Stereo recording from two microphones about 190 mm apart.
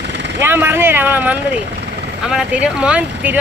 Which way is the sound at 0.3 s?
10° right (ahead or behind).